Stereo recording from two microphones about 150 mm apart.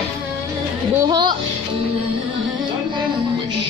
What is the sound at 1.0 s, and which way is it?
Speech, 30° right (ahead or behind).